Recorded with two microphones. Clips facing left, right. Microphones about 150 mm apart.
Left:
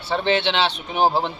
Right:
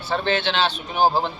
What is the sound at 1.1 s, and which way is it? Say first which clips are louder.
Speech: even; 5° right (ahead or behind).